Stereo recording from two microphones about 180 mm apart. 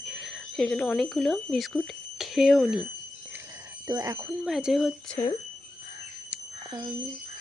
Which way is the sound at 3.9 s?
20° right (ahead or behind).